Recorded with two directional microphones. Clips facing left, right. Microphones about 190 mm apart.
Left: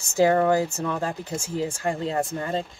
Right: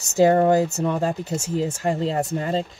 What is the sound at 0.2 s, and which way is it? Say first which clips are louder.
Speech: right 3 dB; 20° right (ahead or behind).